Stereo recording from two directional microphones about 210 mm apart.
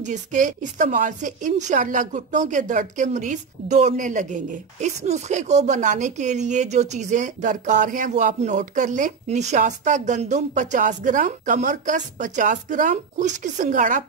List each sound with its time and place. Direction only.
0.0 s a woman's voice: 35° right (ahead or behind)